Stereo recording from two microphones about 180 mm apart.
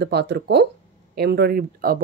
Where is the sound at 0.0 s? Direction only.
65° right (ahead or behind).